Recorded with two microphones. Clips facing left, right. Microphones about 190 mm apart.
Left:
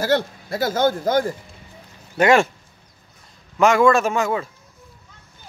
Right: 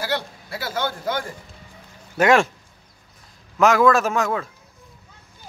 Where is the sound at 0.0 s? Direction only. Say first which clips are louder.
Left 7 dB; 45° left (ahead or behind).